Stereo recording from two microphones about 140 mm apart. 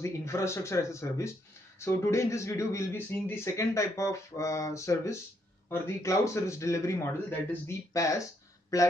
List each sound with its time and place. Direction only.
0.0 s speech: 20° left (ahead or behind)